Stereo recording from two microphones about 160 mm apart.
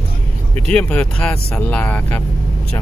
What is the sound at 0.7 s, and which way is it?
Speech, 10° left (ahead or behind).